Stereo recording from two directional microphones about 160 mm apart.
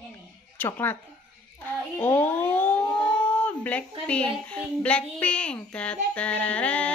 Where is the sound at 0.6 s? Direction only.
15° left (ahead or behind).